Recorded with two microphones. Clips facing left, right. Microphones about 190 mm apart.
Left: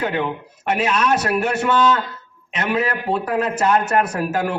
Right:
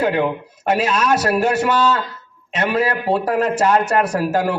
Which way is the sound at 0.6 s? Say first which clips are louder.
Right 2 dB; 35° right (ahead or behind).